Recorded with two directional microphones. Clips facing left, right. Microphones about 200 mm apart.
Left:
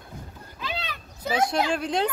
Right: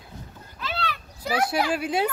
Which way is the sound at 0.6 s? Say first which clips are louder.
Right 3 dB; 15° left (ahead or behind).